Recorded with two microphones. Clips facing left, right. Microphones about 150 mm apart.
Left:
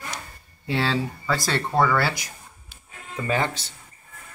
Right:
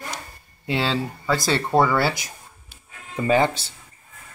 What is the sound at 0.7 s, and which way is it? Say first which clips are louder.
Speech: right 1 dB; centre (ahead or behind).